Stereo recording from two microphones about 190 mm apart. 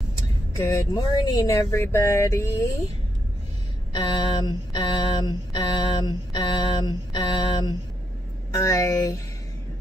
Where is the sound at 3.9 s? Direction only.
20° left (ahead or behind).